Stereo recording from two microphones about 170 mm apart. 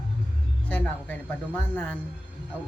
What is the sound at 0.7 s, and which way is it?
Speech, 10° left (ahead or behind).